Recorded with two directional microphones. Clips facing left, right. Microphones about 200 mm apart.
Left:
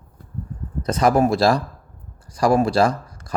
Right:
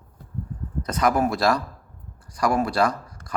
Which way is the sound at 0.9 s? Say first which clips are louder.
Left 5 dB; 30° left (ahead or behind).